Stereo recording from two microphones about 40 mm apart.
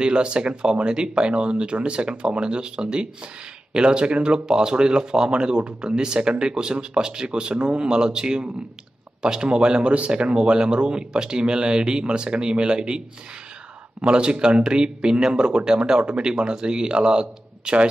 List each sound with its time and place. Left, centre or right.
0.0 s speech: right
14.0 s speech: right